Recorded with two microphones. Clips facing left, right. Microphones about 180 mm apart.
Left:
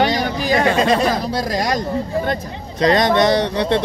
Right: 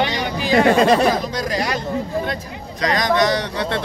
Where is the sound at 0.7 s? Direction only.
55° right (ahead or behind).